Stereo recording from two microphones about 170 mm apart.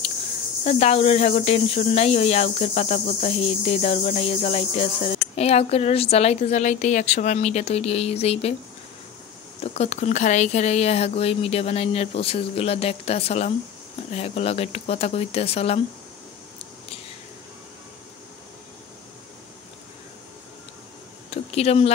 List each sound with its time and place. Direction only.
0.7 s speech: 40° left (ahead or behind)
9.6 s speech: 40° left (ahead or behind)
21.3 s a sound: 35° left (ahead or behind)